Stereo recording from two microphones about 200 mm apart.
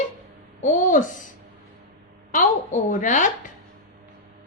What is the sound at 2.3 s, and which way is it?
A woman's voice, 40° left (ahead or behind).